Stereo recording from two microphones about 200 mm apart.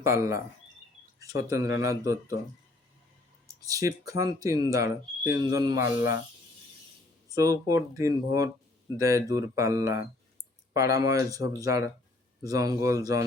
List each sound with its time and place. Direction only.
0.0 s speech: 15° right (ahead or behind)
1.5 s speech: 15° right (ahead or behind)
3.7 s speech: 15° right (ahead or behind)
7.3 s speech: 15° right (ahead or behind)